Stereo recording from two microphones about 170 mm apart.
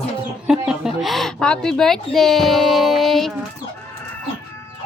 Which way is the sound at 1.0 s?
Centre (ahead or behind).